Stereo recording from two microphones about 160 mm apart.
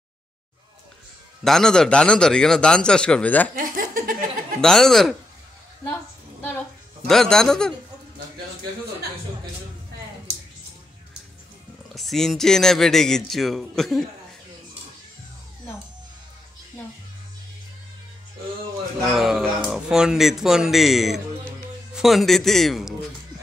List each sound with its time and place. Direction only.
1.4 s speech: 5° left (ahead or behind)
3.5 s chuckle: 60° right (ahead or behind)
4.6 s speech: centre (ahead or behind)
7.1 s speech: 5° left (ahead or behind)
11.9 s speech: centre (ahead or behind)
19.0 s speech: centre (ahead or behind)